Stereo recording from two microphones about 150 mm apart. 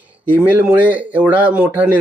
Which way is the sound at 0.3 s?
10° right (ahead or behind).